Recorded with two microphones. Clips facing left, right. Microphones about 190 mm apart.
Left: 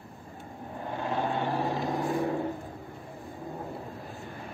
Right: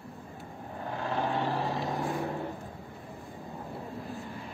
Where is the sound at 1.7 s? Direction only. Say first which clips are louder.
Left 2 dB; centre (ahead or behind).